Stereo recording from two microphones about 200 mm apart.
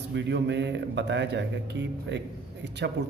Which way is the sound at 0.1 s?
60° right (ahead or behind).